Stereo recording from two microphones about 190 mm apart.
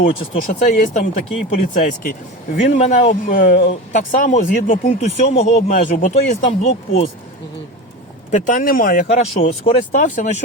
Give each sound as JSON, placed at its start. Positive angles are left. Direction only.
{"t": 0.0, "sound": "speech", "side_deg": 45}
{"t": 3.2, "sound": "speech", "side_deg": 50}
{"t": 3.7, "sound": "speech", "side_deg": 40}
{"t": 8.3, "sound": "speech", "side_deg": 40}